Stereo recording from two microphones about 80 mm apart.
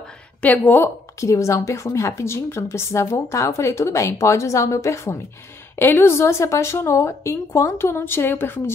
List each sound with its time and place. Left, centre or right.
0.4 s a woman's voice: left
1.2 s a woman's voice: left